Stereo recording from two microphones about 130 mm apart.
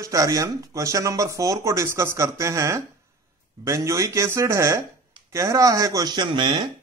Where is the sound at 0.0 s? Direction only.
25° right (ahead or behind).